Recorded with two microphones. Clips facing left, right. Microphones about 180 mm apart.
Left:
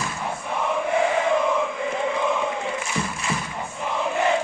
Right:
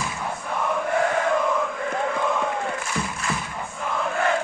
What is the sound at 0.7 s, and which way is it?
Chant, centre (ahead or behind).